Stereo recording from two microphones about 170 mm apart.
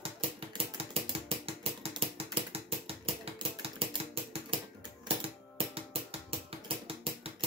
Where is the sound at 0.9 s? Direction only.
35° right (ahead or behind).